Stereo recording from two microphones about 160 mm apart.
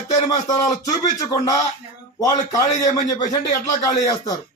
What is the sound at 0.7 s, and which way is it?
Speech, 20° left (ahead or behind).